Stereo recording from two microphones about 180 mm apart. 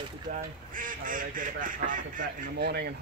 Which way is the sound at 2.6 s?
65° right (ahead or behind).